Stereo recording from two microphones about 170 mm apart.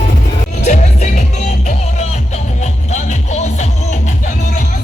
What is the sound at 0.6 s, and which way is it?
Music, 45° left (ahead or behind).